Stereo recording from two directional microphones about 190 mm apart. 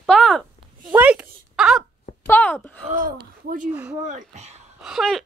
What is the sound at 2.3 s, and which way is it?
Speech, 10° left (ahead or behind).